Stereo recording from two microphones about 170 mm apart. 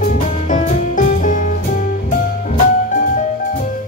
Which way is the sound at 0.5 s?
50° left (ahead or behind).